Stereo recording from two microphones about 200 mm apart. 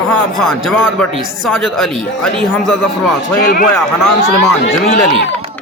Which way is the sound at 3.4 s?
45° left (ahead or behind).